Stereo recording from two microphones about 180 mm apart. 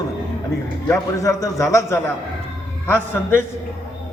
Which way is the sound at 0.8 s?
15° left (ahead or behind).